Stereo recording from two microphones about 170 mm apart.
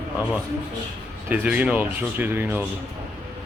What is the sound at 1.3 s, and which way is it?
Speech, 10° right (ahead or behind).